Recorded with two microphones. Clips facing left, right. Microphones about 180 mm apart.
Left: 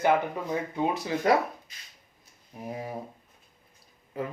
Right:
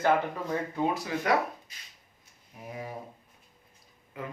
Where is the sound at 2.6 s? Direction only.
35° left (ahead or behind).